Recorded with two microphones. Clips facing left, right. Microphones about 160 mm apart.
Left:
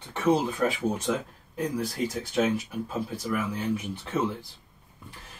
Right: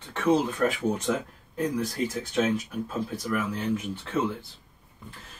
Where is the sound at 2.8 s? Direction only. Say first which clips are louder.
Even; 10° left (ahead or behind).